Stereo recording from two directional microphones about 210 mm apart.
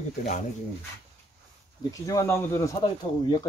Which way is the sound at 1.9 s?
15° left (ahead or behind).